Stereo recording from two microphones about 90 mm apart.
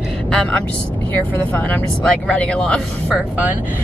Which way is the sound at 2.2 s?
10° left (ahead or behind).